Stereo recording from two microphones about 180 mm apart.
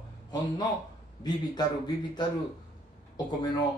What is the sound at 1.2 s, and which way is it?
A man's voice, 25° left (ahead or behind).